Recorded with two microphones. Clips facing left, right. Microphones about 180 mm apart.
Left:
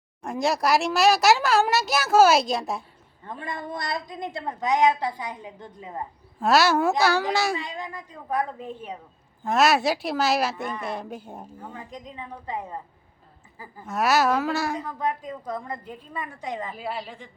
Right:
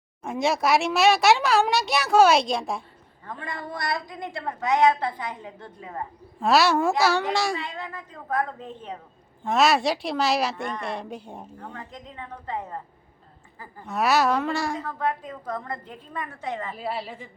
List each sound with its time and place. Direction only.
0.2 s speech: centre (ahead or behind)
3.2 s a woman's voice: 20° left (ahead or behind)
6.4 s speech: centre (ahead or behind)
7.5 s a woman's voice: 15° left (ahead or behind)
11.9 s a woman's voice: 15° left (ahead or behind)
13.8 s speech: centre (ahead or behind)
14.8 s a woman's voice: 15° left (ahead or behind)
16.7 s speech: centre (ahead or behind)